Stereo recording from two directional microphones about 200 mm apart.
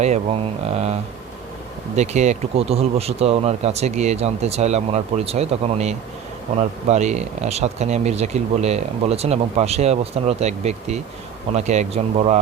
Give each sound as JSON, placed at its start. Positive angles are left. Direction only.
{"t": 0.0, "sound": "speech", "side_deg": -30}
{"t": 2.0, "sound": "speech", "side_deg": -35}